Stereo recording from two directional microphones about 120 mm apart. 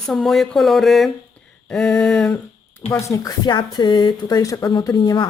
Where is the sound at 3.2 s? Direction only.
35° left (ahead or behind).